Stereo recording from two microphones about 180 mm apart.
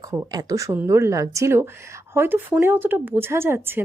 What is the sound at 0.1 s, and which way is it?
Speech, 20° right (ahead or behind).